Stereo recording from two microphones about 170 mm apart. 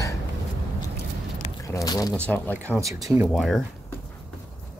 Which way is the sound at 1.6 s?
20° left (ahead or behind).